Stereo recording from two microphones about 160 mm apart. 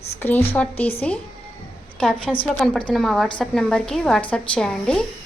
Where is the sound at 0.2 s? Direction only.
10° left (ahead or behind).